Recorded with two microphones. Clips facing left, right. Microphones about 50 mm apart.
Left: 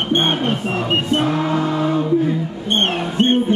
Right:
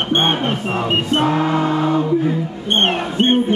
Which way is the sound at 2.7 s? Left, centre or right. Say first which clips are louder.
Right 2 dB; right.